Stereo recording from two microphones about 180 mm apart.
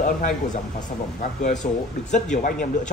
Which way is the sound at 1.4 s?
40° left (ahead or behind).